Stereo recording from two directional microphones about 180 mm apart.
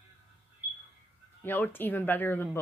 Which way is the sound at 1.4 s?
10° left (ahead or behind).